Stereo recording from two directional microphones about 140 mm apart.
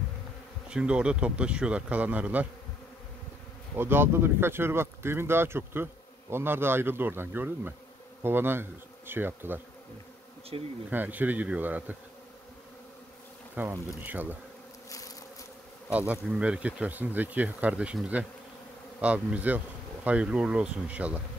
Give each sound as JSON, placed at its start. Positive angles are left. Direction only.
{"t": 0.7, "sound": "speech", "side_deg": -5}
{"t": 3.7, "sound": "speech", "side_deg": -15}
{"t": 8.2, "sound": "bee", "side_deg": -15}
{"t": 10.5, "sound": "bee", "side_deg": -45}
{"t": 10.9, "sound": "speech", "side_deg": -15}
{"t": 13.6, "sound": "speech", "side_deg": -10}
{"t": 15.9, "sound": "speech", "side_deg": -10}